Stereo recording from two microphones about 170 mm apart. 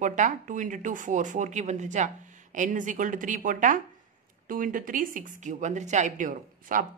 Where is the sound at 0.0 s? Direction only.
50° right (ahead or behind).